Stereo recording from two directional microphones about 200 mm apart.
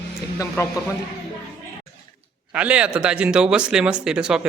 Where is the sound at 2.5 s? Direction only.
5° right (ahead or behind).